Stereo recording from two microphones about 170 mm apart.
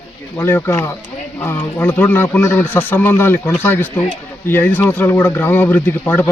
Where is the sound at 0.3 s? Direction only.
15° left (ahead or behind).